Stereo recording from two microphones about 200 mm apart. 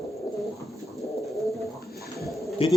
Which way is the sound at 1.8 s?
50° left (ahead or behind).